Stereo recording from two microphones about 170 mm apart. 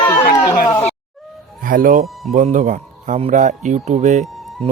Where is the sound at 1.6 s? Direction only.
55° right (ahead or behind).